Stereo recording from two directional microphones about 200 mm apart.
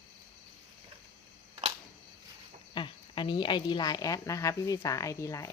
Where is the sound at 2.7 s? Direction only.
25° left (ahead or behind).